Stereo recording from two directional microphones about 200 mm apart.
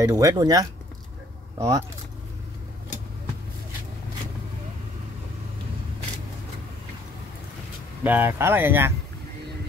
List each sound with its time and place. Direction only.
0.0 s speech: 15° right (ahead or behind)
8.0 s speech: 10° right (ahead or behind)